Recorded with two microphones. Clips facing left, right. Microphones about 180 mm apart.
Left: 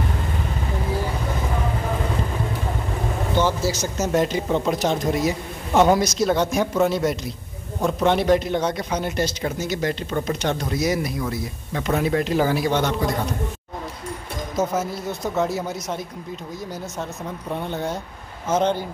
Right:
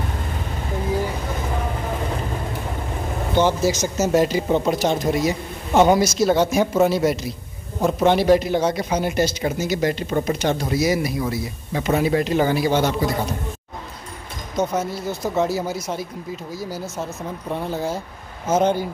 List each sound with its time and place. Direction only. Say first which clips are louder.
3.3 s speech: right 4 dB; 20° right (ahead or behind)
4.0 s speech: right 3 dB; 5° right (ahead or behind)
14.5 s speech: right 1 dB; 5° left (ahead or behind)
17.5 s speech: right 2 dB; centre (ahead or behind)